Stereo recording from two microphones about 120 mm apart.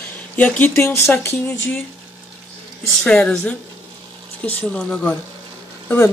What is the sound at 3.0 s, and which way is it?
Speech, 5° left (ahead or behind).